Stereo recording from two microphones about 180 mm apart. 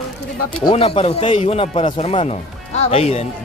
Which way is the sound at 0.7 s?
30° left (ahead or behind).